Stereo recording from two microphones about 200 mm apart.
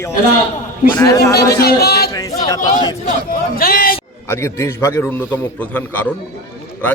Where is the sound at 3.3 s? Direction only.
45° left (ahead or behind).